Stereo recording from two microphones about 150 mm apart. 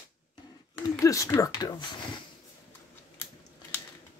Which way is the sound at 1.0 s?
20° left (ahead or behind).